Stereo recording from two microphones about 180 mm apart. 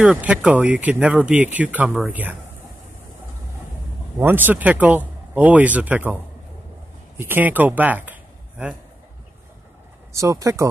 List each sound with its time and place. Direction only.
0.0 s speech: 5° right (ahead or behind)
4.2 s speech: 10° right (ahead or behind)
7.2 s speech: 10° right (ahead or behind)
10.1 s speech: 15° right (ahead or behind)